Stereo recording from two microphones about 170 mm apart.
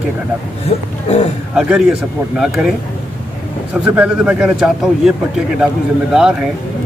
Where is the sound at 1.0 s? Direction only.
40° left (ahead or behind).